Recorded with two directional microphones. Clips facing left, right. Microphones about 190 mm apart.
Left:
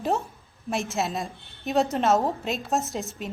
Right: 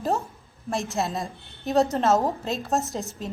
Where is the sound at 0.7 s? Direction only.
Centre (ahead or behind).